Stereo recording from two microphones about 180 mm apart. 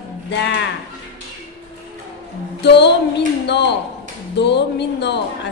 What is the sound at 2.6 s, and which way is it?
Speech, 70° left (ahead or behind).